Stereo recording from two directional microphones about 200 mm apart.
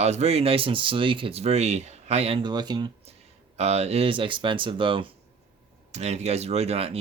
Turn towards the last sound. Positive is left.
turn(degrees=-30)  # may be behind; listen again after turning